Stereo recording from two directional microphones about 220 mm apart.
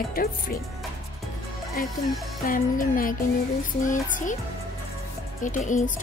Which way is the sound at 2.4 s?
40° left (ahead or behind).